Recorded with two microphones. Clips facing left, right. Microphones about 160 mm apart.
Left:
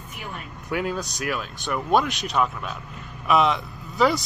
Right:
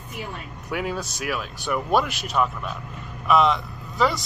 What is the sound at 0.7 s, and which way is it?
Speech, centre (ahead or behind).